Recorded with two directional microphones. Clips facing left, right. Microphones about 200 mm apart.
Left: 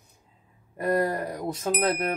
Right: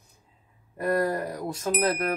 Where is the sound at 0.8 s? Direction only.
20° left (ahead or behind).